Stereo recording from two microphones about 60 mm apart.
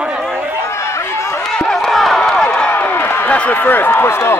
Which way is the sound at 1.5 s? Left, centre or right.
Centre.